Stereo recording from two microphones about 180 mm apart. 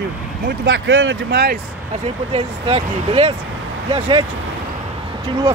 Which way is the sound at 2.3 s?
35° right (ahead or behind).